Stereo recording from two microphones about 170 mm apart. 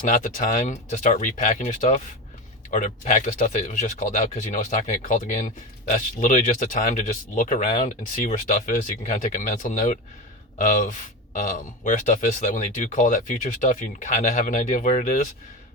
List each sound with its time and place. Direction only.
0.1 s speech: 50° left (ahead or behind)